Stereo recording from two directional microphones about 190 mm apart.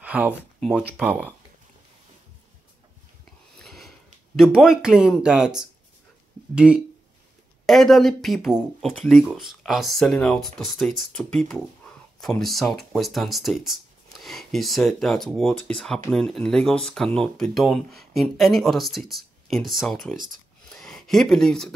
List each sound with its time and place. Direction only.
0.0 s speech: 5° right (ahead or behind)
3.5 s sniff: centre (ahead or behind)
4.6 s speech: 5° right (ahead or behind)
11.9 s a sound: 5° left (ahead or behind)
12.2 s speech: centre (ahead or behind)
20.2 s a sound: centre (ahead or behind)